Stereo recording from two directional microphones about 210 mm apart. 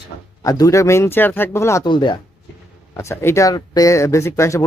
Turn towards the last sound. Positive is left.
turn(degrees=15)  # may be behind; listen again after turning